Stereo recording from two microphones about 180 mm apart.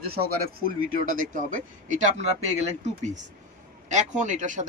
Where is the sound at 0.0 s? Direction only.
60° right (ahead or behind); by 2.2 s 40° right (ahead or behind).